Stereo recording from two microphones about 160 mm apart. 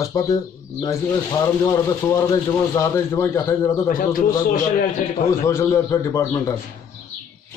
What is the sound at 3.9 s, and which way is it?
Speech, 60° left (ahead or behind).